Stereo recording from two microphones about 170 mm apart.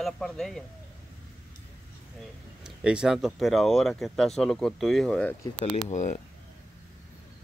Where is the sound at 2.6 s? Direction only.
5° right (ahead or behind).